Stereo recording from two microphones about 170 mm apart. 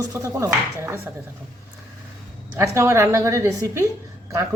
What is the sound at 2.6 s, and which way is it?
A woman's voice, 15° right (ahead or behind).